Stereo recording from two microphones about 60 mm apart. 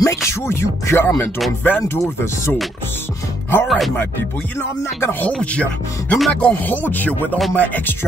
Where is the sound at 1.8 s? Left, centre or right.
Left.